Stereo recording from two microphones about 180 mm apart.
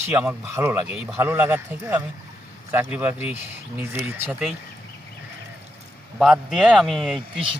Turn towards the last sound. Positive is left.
turn(degrees=0)  # may be behind; listen again after turning